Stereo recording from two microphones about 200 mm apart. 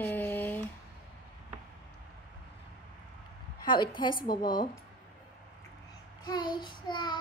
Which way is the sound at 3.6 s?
25° left (ahead or behind).